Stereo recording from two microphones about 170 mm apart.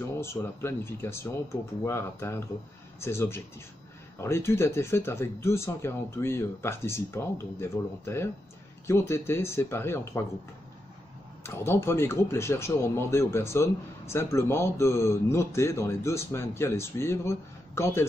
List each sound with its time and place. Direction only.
0.2 s speech: 15° left (ahead or behind)
11.4 s speech: 15° left (ahead or behind)